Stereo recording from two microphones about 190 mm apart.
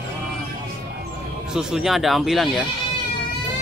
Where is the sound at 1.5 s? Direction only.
5° right (ahead or behind).